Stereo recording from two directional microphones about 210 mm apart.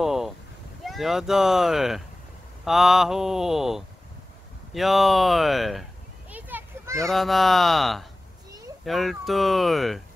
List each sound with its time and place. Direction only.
0.0 s meow: centre (ahead or behind)
0.8 s speech: centre (ahead or behind)
6.3 s a sound: 10° right (ahead or behind)
7.1 s speech: centre (ahead or behind)